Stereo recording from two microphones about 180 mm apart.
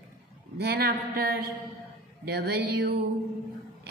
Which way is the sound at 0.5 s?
60° right (ahead or behind).